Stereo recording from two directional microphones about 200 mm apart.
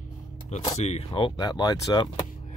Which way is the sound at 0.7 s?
30° left (ahead or behind).